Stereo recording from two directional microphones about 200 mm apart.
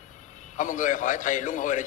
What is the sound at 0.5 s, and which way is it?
A man's voice, 40° left (ahead or behind).